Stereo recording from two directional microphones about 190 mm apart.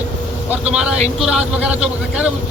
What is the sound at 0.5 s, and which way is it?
A man's voice, 5° right (ahead or behind).